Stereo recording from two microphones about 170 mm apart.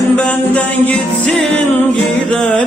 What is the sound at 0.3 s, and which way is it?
Music, 10° left (ahead or behind).